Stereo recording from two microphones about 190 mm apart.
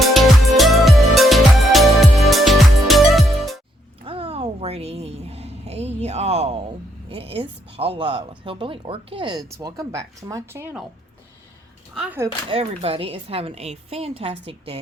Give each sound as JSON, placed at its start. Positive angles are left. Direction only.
{"t": 0.0, "sound": "music", "side_deg": 0}
{"t": 4.0, "sound": "a sound", "side_deg": -30}
{"t": 7.1, "sound": "speech", "side_deg": -30}
{"t": 11.9, "sound": "speech", "side_deg": -10}
{"t": 12.5, "sound": "speech", "side_deg": -30}